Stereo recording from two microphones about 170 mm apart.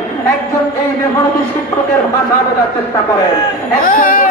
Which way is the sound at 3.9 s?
55° left (ahead or behind).